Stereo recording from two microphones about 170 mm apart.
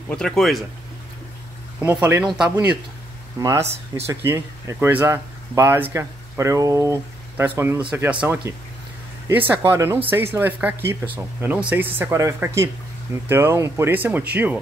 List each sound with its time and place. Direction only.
0.1 s speech: 5° left (ahead or behind)
1.8 s speech: 10° right (ahead or behind)
3.6 s speech: 40° right (ahead or behind)
4.0 s speech: 15° right (ahead or behind)